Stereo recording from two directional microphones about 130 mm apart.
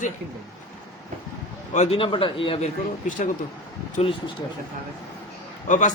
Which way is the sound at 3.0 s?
80° left.